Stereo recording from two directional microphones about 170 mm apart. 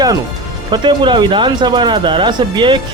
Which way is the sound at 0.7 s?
30° right (ahead or behind).